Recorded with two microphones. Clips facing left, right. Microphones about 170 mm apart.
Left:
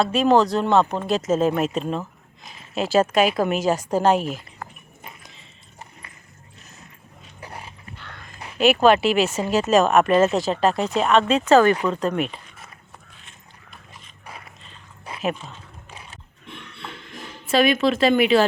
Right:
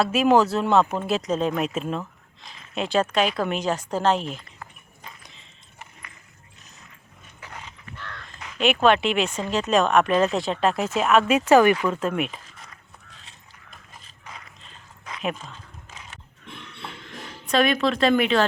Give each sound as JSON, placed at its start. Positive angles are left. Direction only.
{"t": 0.0, "sound": "speech", "side_deg": -5}
{"t": 7.4, "sound": "dog", "side_deg": 30}
{"t": 8.5, "sound": "speech", "side_deg": 5}
{"t": 17.4, "sound": "speech", "side_deg": 5}